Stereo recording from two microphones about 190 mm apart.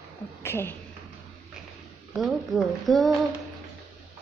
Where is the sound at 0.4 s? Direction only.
10° left (ahead or behind).